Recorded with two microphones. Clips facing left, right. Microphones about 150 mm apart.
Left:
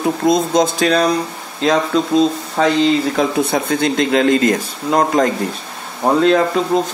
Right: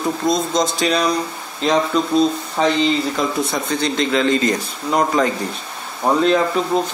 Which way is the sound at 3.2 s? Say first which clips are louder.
Left 4 dB; 60° left (ahead or behind).